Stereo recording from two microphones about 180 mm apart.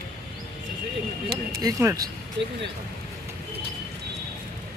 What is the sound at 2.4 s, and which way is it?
Speech, 70° right (ahead or behind).